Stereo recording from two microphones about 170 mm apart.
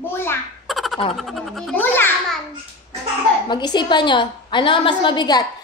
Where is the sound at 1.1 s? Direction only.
Centre (ahead or behind).